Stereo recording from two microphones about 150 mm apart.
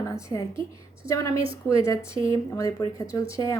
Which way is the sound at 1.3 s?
35° right (ahead or behind).